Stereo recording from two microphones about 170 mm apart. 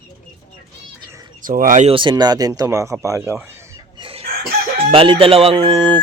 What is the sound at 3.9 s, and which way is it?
Chicken, 30° right (ahead or behind).